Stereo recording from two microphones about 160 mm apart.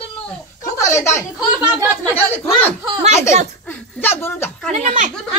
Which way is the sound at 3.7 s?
10° left (ahead or behind).